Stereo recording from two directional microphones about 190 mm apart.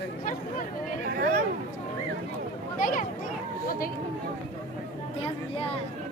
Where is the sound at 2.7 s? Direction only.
45° left (ahead or behind).